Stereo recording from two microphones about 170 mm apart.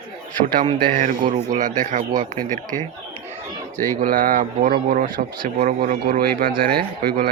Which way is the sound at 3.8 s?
55° right (ahead or behind).